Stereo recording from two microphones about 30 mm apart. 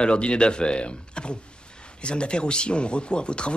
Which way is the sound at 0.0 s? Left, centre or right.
Left.